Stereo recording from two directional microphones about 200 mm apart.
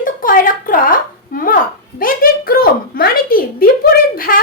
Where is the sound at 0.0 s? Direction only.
45° left (ahead or behind).